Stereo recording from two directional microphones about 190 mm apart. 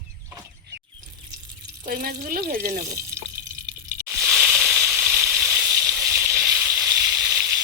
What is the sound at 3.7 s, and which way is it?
Crunch, 50° right (ahead or behind).